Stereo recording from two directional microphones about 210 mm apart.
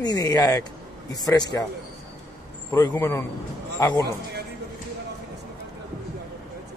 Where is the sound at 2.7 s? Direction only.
15° left (ahead or behind).